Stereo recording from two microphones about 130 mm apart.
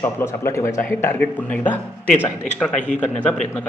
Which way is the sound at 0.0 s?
20° left (ahead or behind).